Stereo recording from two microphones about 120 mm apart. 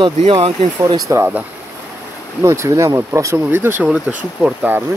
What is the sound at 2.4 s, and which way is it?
Speech, 25° right (ahead or behind).